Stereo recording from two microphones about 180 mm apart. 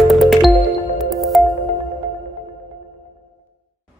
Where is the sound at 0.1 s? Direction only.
Centre (ahead or behind).